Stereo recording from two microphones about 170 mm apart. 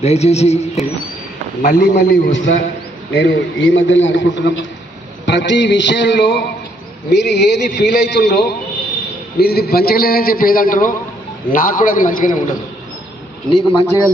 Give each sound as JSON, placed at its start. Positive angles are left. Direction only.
{"t": 0.0, "sound": "speech", "side_deg": 40}
{"t": 1.6, "sound": "a man's voice", "side_deg": 65}
{"t": 3.1, "sound": "a man's voice", "side_deg": 90}
{"t": 9.4, "sound": "a man's voice", "side_deg": 65}
{"t": 13.5, "sound": "speech", "side_deg": 30}